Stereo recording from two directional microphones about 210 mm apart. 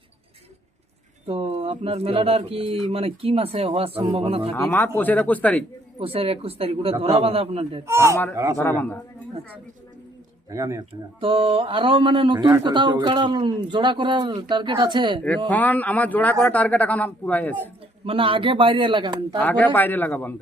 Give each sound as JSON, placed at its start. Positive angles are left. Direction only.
{"t": 1.3, "sound": "speech", "side_deg": -30}
{"t": 4.5, "sound": "speech", "side_deg": 10}
{"t": 6.0, "sound": "speech", "side_deg": -25}
{"t": 7.9, "sound": "speech", "side_deg": -15}
{"t": 8.5, "sound": "speech", "side_deg": 10}
{"t": 10.5, "sound": "speech", "side_deg": -15}
{"t": 15.4, "sound": "speech", "side_deg": 10}
{"t": 18.0, "sound": "speech", "side_deg": -25}
{"t": 19.4, "sound": "speech", "side_deg": 5}